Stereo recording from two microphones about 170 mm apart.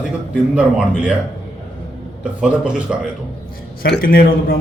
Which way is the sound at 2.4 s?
5° right (ahead or behind).